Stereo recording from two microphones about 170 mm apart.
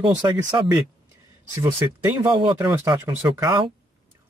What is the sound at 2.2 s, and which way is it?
Speech, 30° right (ahead or behind).